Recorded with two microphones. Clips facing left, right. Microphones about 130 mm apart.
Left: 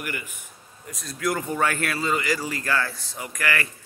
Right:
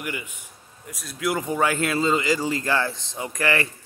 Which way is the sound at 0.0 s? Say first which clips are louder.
Right 1 dB; 20° right (ahead or behind).